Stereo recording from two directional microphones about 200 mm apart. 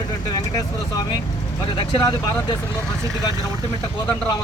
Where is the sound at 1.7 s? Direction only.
25° left (ahead or behind).